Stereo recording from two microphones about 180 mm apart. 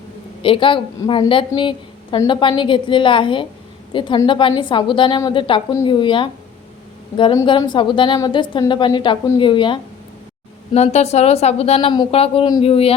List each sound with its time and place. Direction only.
0.4 s a woman's voice: 30° left (ahead or behind)
7.3 s a woman's voice: 25° left (ahead or behind)